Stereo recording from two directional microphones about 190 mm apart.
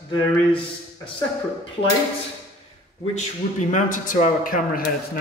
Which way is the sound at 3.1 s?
40° left (ahead or behind).